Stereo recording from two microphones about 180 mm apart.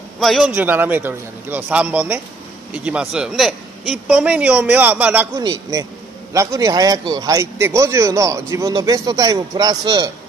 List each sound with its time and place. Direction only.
0.2 s a man's voice: centre (ahead or behind); by 10.1 s 20° right (ahead or behind)